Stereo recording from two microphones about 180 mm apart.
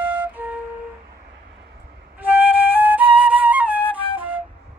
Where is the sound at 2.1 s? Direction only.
10° right (ahead or behind).